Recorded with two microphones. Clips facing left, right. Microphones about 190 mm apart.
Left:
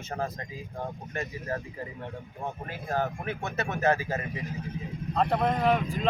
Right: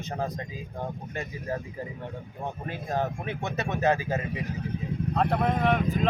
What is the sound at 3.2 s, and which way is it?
Speech, 20° right (ahead or behind).